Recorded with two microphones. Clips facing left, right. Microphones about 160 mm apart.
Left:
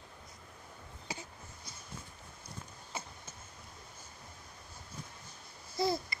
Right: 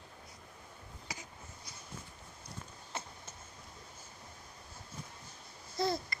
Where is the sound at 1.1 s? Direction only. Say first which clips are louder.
Left 4 dB; 30° left (ahead or behind).